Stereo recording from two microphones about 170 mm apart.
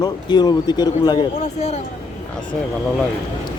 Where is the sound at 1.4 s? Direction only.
40° left (ahead or behind).